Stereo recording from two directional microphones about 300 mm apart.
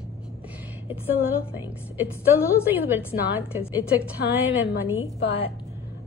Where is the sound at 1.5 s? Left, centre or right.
Centre.